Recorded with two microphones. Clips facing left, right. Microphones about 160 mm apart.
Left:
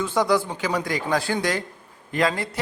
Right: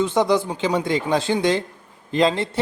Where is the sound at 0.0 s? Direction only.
20° right (ahead or behind).